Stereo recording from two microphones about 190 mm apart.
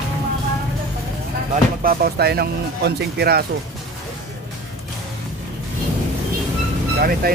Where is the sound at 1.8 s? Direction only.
50° right (ahead or behind).